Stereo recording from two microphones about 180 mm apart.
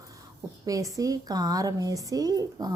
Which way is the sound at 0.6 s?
20° right (ahead or behind).